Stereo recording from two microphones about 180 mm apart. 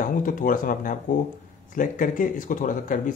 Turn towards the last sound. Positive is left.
turn(degrees=45)  # may be behind; listen again after turning